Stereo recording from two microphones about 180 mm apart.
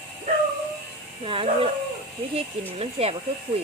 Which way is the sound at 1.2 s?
30° right (ahead or behind).